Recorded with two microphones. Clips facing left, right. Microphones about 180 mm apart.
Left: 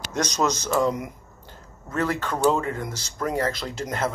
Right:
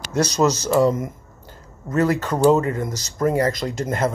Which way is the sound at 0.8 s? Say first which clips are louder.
Right 5 dB; 45° right (ahead or behind).